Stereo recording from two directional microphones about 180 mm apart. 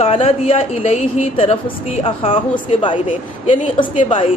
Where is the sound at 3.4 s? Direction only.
40° left (ahead or behind).